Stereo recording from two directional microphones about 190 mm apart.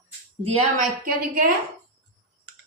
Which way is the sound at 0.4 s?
35° right (ahead or behind).